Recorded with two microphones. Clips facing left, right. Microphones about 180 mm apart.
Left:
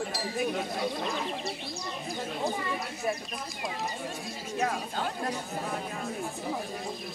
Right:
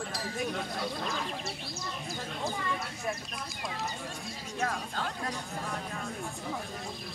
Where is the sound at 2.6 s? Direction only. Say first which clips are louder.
Left 3 dB; 10° left (ahead or behind).